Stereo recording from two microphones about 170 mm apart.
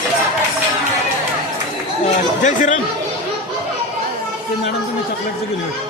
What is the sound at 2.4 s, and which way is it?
Speech, 50° left (ahead or behind).